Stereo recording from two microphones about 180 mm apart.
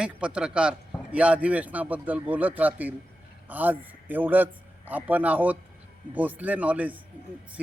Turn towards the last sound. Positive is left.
turn(degrees=-5)  # may be behind; listen again after turning